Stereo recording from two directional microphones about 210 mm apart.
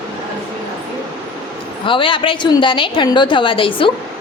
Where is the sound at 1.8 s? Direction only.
25° left (ahead or behind).